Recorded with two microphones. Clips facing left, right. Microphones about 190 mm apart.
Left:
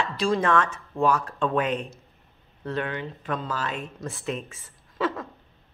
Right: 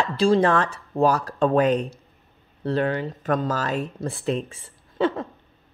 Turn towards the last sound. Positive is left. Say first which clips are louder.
# right 5 dB
turn(degrees=-30)  # may be behind; listen again after turning